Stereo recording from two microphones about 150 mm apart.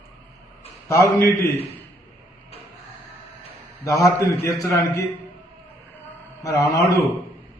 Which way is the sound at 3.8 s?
20° left (ahead or behind).